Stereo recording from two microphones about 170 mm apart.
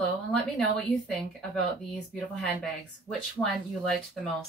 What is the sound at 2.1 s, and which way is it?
Speech, centre (ahead or behind).